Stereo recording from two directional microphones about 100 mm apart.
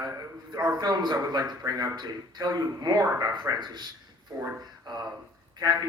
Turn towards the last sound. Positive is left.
turn(degrees=-40)  # may be behind; listen again after turning